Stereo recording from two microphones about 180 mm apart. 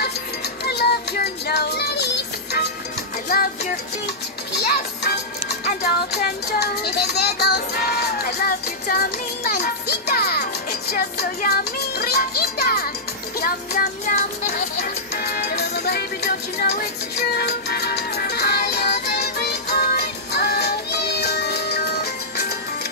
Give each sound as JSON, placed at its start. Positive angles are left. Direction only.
{"t": 0.7, "sound": "music", "side_deg": 60}
{"t": 3.3, "sound": "music", "side_deg": 55}
{"t": 5.7, "sound": "child singing", "side_deg": 60}
{"t": 13.4, "sound": "music", "side_deg": 50}